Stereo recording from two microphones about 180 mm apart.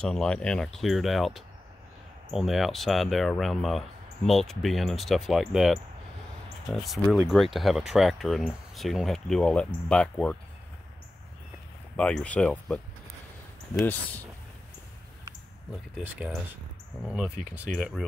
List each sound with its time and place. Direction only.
0.0 s speech: 5° left (ahead or behind)
12.0 s speech: 5° left (ahead or behind)
16.0 s speech: 5° right (ahead or behind)